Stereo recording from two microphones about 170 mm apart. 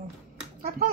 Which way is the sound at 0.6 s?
60° right (ahead or behind).